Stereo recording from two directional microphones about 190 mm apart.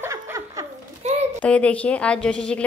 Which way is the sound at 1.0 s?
35° right (ahead or behind).